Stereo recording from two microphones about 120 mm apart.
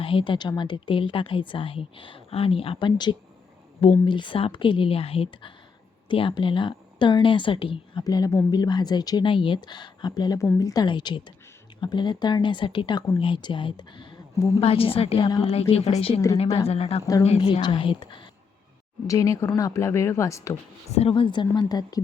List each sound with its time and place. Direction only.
0.0 s a woman's voice: 45° left (ahead or behind)
8.0 s speech: 30° left (ahead or behind)
14.6 s a woman's voice: 55° left (ahead or behind)
19.0 s speech: 25° left (ahead or behind)
21.1 s speech: 45° left (ahead or behind)